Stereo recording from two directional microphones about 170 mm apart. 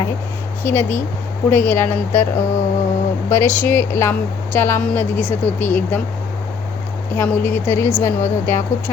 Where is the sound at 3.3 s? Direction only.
15° left (ahead or behind).